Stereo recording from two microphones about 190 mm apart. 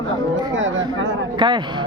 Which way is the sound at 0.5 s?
90° right.